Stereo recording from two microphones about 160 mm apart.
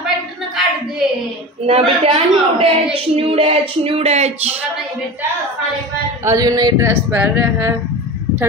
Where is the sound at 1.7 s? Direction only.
40° right (ahead or behind).